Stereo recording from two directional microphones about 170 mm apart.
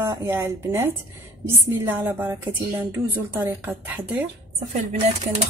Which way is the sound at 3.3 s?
10° right (ahead or behind).